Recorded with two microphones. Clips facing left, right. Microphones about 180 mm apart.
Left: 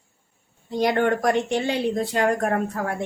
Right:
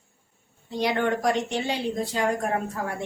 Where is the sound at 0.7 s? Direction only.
50° left (ahead or behind).